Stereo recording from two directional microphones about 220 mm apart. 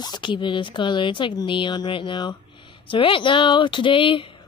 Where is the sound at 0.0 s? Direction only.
20° left (ahead or behind).